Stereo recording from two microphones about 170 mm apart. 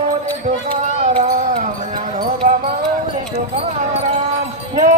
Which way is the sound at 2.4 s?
50° right (ahead or behind).